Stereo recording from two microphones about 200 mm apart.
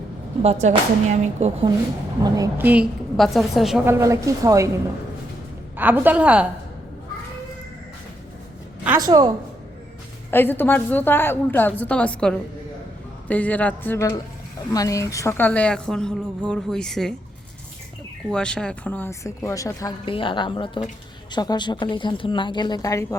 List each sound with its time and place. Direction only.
0.4 s speech: 30° right (ahead or behind)
2.2 s a woman's voice: 15° right (ahead or behind); by 3.8 s centre (ahead or behind)
3.8 s a woman's voice: 15° right (ahead or behind)
5.7 s a woman's voice: 10° right (ahead or behind)
9.0 s a woman's voice: 20° right (ahead or behind)
10.3 s a woman's voice: 10° left (ahead or behind)
18.3 s a woman's voice: 5° left (ahead or behind)